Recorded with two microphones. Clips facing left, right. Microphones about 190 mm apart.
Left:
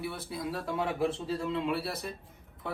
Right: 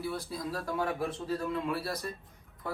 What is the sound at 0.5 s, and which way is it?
Speech, 25° left (ahead or behind).